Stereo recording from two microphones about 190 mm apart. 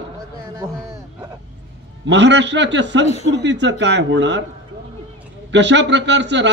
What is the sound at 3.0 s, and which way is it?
Speech, 35° left (ahead or behind).